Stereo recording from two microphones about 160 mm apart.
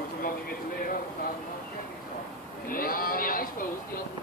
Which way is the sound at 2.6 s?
65° left (ahead or behind).